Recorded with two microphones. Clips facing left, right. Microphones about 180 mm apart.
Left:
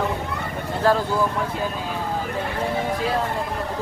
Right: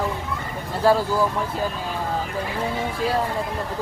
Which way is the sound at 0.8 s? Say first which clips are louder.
Right 1 dB; 10° right (ahead or behind).